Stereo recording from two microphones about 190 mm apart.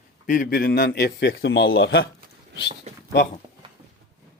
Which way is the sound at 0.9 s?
65° left (ahead or behind).